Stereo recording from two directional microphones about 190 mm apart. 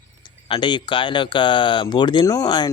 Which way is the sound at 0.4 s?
25° left (ahead or behind).